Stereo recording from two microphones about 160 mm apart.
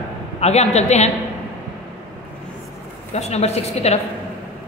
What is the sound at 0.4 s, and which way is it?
Speech, 45° left (ahead or behind).